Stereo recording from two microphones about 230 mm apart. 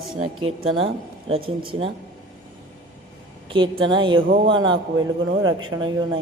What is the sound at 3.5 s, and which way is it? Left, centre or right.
A man's voice, centre.